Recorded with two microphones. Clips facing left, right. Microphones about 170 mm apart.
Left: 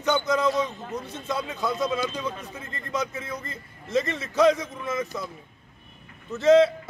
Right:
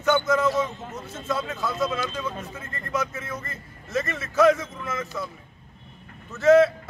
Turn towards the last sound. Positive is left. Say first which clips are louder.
# right 1 dB
turn(degrees=20)  # may be behind; listen again after turning